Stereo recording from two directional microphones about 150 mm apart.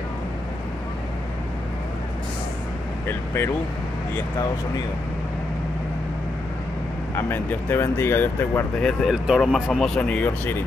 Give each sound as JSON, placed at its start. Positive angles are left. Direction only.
{"t": 7.2, "sound": "speech", "side_deg": 15}
{"t": 8.8, "sound": "speech", "side_deg": 0}